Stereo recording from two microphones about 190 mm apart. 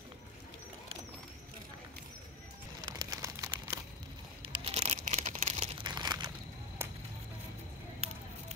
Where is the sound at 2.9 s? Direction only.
20° right (ahead or behind).